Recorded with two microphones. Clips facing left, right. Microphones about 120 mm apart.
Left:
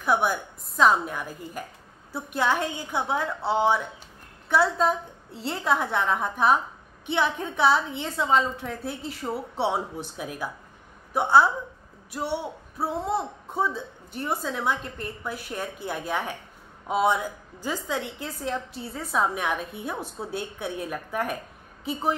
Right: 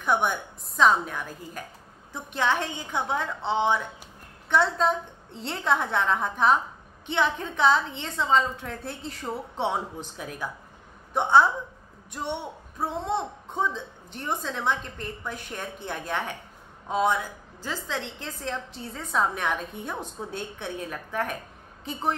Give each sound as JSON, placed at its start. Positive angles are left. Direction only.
{"t": 0.0, "sound": "a man's voice", "side_deg": 5}